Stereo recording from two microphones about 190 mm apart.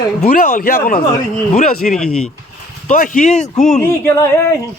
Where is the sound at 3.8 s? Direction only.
15° left (ahead or behind).